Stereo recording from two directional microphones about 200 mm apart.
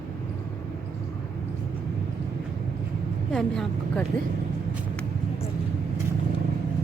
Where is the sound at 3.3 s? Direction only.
Centre (ahead or behind).